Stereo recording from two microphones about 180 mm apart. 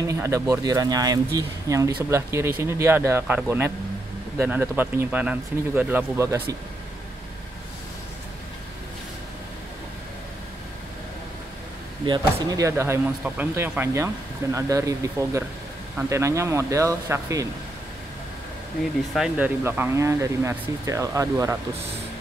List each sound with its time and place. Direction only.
0.0 s speech: 15° right (ahead or behind)
12.1 s speech: 20° right (ahead or behind)
19.1 s speech: 5° right (ahead or behind)